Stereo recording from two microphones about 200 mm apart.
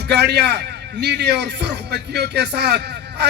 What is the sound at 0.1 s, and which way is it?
A man's voice, 55° right (ahead or behind).